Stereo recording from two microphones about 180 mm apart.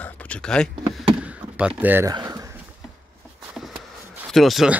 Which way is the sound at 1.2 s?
5° right (ahead or behind).